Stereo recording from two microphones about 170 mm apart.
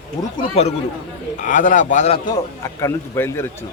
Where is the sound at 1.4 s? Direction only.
45° left (ahead or behind).